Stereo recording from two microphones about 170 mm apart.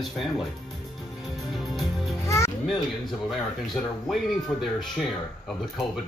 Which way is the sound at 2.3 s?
15° left (ahead or behind).